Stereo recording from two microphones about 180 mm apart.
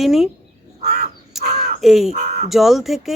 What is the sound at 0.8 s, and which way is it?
Crow, 35° right (ahead or behind).